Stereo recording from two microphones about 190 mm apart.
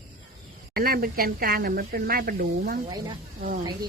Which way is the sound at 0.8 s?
50° right (ahead or behind).